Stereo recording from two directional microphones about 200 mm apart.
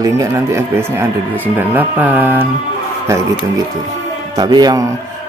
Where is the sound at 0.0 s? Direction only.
15° right (ahead or behind).